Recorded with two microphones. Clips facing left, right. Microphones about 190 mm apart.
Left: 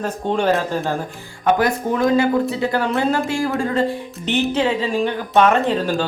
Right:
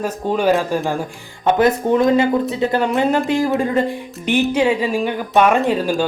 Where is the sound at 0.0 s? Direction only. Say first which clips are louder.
Right 2 dB; 5° right (ahead or behind).